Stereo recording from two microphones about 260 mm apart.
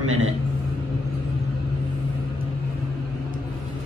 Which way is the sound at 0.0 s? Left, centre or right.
Right.